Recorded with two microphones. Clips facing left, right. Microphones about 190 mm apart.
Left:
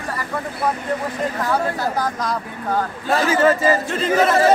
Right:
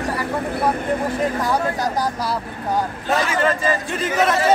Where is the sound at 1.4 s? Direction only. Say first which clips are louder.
Even; 15° right (ahead or behind).